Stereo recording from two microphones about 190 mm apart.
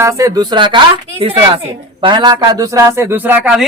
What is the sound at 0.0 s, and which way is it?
A woman's voice, 15° right (ahead or behind).